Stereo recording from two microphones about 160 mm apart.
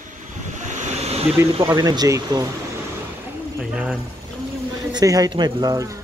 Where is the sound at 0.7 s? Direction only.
50° right (ahead or behind).